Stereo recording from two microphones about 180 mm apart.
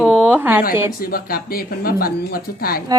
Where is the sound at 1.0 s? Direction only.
55° left (ahead or behind).